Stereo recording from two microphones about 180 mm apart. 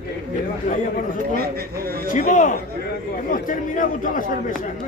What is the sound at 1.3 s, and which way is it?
Speech, 55° right (ahead or behind).